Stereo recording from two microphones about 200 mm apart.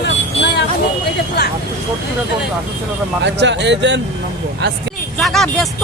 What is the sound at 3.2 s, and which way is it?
Speech, 60° right (ahead or behind).